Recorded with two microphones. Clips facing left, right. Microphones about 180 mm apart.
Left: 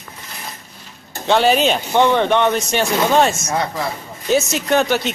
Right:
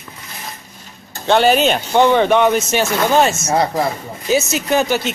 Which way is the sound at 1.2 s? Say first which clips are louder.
Right 2 dB; centre (ahead or behind).